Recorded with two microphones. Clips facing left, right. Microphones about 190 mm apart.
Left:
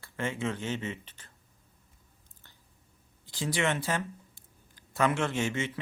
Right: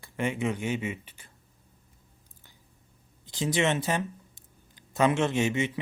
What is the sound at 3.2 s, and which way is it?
Speech, 20° right (ahead or behind).